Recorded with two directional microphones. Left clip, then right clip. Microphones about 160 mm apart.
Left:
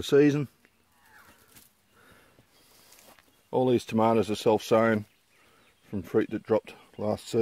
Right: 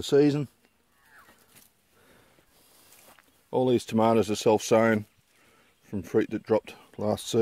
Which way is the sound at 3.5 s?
15° right (ahead or behind).